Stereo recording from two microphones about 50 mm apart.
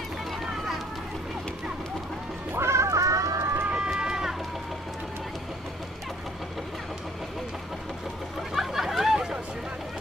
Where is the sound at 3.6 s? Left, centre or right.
Right.